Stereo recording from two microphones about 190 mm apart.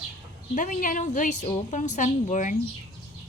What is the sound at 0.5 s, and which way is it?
A woman's voice, 40° left (ahead or behind).